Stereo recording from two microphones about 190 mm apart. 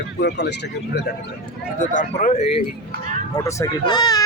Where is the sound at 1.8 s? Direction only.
40° left (ahead or behind).